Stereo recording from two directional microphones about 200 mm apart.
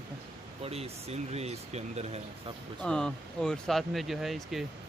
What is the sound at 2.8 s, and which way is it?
Speech, 5° left (ahead or behind).